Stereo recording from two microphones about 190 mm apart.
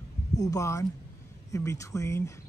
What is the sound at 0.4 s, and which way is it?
Speech, 15° left (ahead or behind).